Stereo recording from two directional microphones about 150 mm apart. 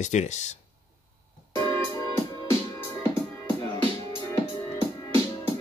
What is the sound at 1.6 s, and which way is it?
Music, 15° left (ahead or behind).